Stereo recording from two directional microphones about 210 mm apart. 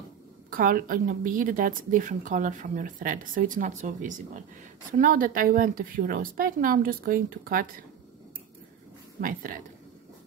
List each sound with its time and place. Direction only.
0.5 s a woman's voice: 40° right (ahead or behind)
9.2 s a woman's voice: 40° right (ahead or behind)